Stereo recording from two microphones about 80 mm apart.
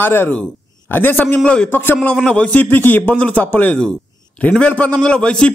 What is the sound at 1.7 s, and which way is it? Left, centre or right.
Speech, left.